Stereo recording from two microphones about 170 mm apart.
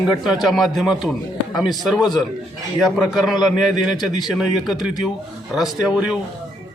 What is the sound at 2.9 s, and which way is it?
Speech, centre (ahead or behind).